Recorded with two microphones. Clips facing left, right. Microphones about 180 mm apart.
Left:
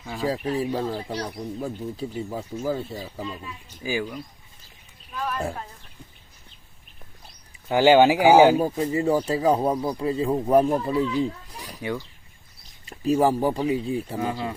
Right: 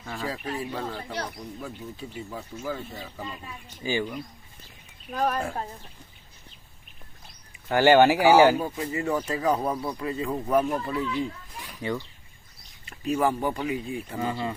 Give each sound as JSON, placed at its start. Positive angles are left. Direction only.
{"t": 0.0, "sound": "a sound", "side_deg": 5}
{"t": 0.3, "sound": "speech", "side_deg": 35}
{"t": 3.8, "sound": "speech", "side_deg": 0}
{"t": 5.1, "sound": "speech", "side_deg": -40}
{"t": 7.7, "sound": "speech", "side_deg": 15}
{"t": 8.5, "sound": "speech", "side_deg": 35}
{"t": 11.8, "sound": "speech", "side_deg": 10}
{"t": 12.9, "sound": "speech", "side_deg": 35}
{"t": 14.2, "sound": "speech", "side_deg": 5}